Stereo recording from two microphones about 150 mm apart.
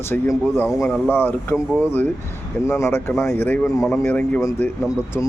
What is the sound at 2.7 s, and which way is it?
Speech, 15° left (ahead or behind).